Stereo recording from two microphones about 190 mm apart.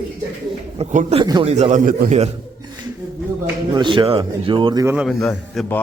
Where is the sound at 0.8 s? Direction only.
35° right (ahead or behind).